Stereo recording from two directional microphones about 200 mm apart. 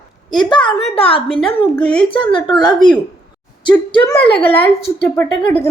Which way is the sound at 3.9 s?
25° left (ahead or behind).